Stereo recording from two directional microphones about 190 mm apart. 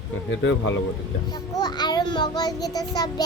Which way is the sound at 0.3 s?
75° left (ahead or behind).